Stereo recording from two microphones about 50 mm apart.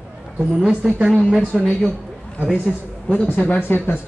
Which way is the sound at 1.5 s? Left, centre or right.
Centre.